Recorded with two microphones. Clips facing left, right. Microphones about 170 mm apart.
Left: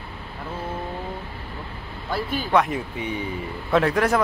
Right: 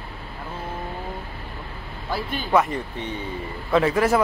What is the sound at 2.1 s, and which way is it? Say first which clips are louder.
Speech: even; centre (ahead or behind).